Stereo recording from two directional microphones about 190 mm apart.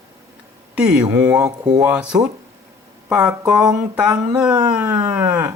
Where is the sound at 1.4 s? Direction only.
20° right (ahead or behind).